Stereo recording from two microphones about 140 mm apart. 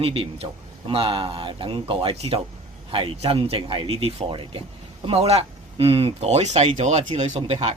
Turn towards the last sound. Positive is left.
turn(degrees=-50)  # may be behind; listen again after turning